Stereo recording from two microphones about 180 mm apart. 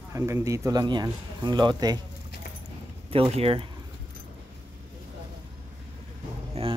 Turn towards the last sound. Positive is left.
turn(degrees=-30)  # may be behind; listen again after turning